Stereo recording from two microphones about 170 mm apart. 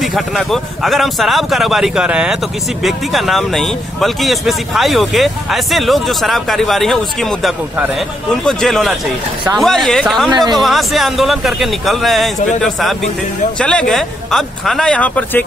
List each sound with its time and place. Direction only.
0.0 s speech: centre (ahead or behind)